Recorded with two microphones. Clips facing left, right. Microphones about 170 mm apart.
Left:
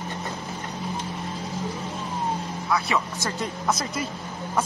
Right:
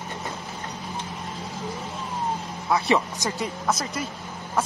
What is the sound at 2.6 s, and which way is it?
Speech, 25° right (ahead or behind).